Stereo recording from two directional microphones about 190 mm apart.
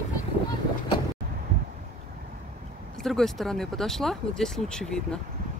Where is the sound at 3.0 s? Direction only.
Centre (ahead or behind).